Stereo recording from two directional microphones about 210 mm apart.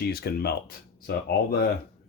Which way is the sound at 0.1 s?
45° left (ahead or behind).